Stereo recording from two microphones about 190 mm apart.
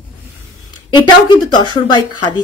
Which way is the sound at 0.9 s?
25° left (ahead or behind).